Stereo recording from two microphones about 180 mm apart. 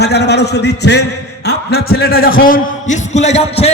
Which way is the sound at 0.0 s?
65° left (ahead or behind).